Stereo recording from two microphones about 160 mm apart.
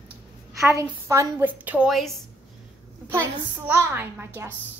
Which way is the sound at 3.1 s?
15° right (ahead or behind).